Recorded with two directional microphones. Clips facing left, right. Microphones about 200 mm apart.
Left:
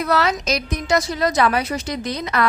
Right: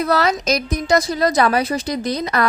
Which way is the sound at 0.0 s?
35° right (ahead or behind).